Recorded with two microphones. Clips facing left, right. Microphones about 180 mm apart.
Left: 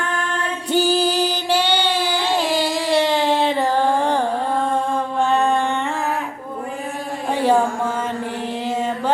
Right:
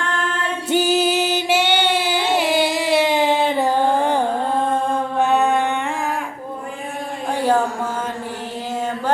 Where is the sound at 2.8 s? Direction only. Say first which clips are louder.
Right 1 dB; 5° right (ahead or behind).